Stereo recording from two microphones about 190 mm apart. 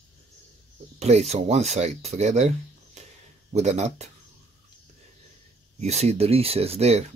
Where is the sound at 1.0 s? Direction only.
35° right (ahead or behind).